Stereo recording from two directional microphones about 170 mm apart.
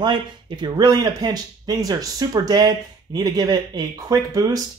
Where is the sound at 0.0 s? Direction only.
25° right (ahead or behind).